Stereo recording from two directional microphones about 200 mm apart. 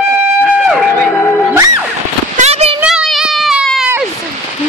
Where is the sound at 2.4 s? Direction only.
30° right (ahead or behind).